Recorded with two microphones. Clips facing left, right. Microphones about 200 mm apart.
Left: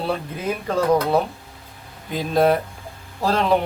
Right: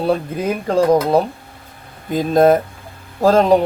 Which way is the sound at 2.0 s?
45° right (ahead or behind).